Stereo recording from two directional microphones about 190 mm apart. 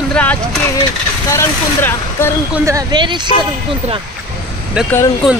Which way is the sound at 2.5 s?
15° right (ahead or behind).